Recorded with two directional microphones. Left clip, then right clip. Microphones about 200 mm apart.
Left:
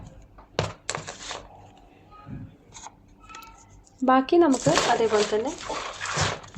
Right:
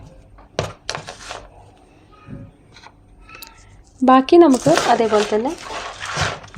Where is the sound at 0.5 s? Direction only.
25° right (ahead or behind).